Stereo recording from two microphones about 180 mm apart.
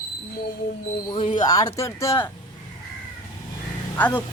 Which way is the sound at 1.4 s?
20° left (ahead or behind).